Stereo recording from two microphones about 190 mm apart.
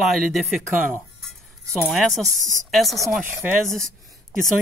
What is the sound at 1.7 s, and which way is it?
Speech, centre (ahead or behind).